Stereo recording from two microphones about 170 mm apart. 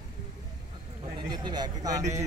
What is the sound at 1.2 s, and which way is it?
Speech, 25° right (ahead or behind).